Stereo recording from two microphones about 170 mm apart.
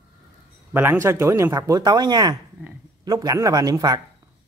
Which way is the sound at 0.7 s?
15° right (ahead or behind).